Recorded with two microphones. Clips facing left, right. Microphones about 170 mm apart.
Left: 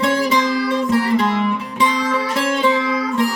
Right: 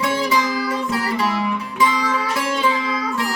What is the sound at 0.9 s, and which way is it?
Music, 25° left (ahead or behind).